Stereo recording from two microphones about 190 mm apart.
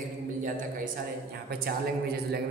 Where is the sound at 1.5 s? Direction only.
55° right (ahead or behind).